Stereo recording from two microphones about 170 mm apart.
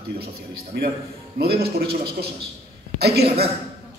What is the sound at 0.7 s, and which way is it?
Speech, 75° right (ahead or behind).